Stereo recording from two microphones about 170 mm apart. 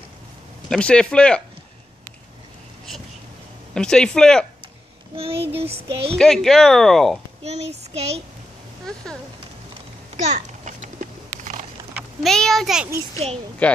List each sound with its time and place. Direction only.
0.7 s speech: 5° left (ahead or behind)
3.7 s speech: 5° left (ahead or behind)
5.1 s child singing: 35° right (ahead or behind)
6.1 s speech: 5° left (ahead or behind)
7.4 s child singing: 40° right (ahead or behind)
10.1 s a sound: 45° right (ahead or behind)
11.9 s speech: centre (ahead or behind)